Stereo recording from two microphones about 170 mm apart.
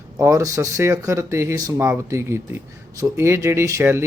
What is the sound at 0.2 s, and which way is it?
Speech, 20° right (ahead or behind).